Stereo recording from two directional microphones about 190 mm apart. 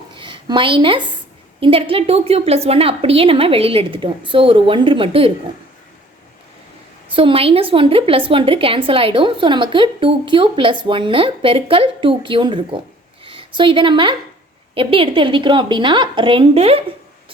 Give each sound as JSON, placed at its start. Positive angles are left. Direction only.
{"t": 0.2, "sound": "a woman's voice", "side_deg": -25}
{"t": 7.1, "sound": "a woman's voice", "side_deg": -30}